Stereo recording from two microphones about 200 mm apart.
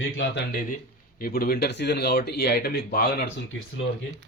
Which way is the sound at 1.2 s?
50° left (ahead or behind).